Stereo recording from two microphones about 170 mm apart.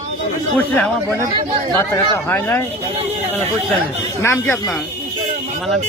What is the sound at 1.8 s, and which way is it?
Speech, 15° left (ahead or behind).